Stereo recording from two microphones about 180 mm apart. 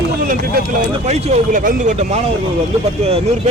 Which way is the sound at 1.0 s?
40° right (ahead or behind).